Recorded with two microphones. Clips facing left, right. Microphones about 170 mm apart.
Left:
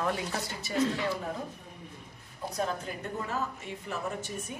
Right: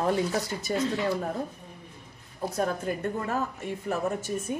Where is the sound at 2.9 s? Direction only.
50° right (ahead or behind).